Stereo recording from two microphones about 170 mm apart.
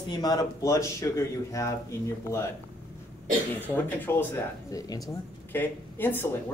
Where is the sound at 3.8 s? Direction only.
10° left (ahead or behind).